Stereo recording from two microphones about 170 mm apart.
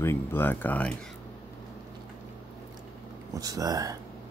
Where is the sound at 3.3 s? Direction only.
20° right (ahead or behind).